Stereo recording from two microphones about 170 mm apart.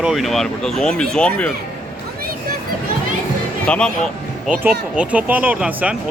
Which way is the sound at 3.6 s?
5° left (ahead or behind).